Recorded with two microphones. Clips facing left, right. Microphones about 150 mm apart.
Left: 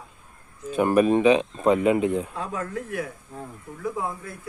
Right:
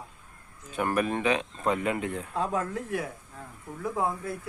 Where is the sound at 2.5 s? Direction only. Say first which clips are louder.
Even; 25° right (ahead or behind).